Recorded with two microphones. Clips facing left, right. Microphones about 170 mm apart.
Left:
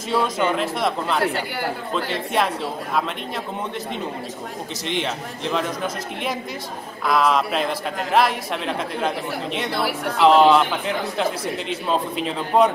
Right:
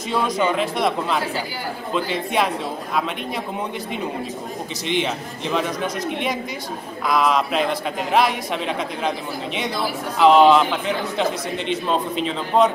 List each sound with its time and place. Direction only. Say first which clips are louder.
0.1 s a man's voice: even; centre (ahead or behind)
4.8 s a man's voice: right 3 dB; centre (ahead or behind)
7.1 s a man's voice: even; centre (ahead or behind)
9.8 s speech: left 1 dB; 70° left (ahead or behind)
10.1 s a man's voice: right 1 dB; centre (ahead or behind)